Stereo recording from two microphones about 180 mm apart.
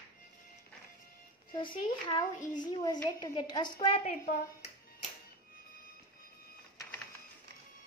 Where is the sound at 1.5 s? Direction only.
25° left (ahead or behind).